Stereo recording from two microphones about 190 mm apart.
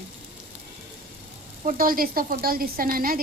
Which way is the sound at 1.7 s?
50° right (ahead or behind).